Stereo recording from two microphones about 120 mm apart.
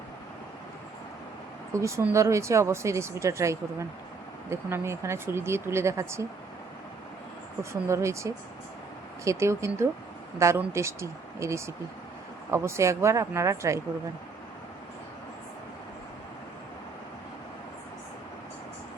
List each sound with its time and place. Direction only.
1.7 s speech: 25° right (ahead or behind)
7.6 s speech: 25° right (ahead or behind)